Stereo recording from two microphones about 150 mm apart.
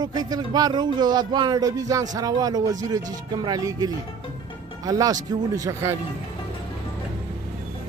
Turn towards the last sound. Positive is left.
turn(degrees=-20)  # may be behind; listen again after turning